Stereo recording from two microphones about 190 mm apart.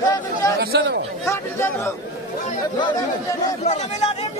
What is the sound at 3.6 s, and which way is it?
Speech, 35° left (ahead or behind).